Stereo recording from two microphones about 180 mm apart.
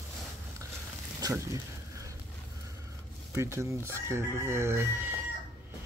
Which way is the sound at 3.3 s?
15° right (ahead or behind).